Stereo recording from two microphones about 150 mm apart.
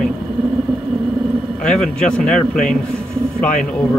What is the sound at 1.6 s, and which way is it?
A man's voice, 5° left (ahead or behind).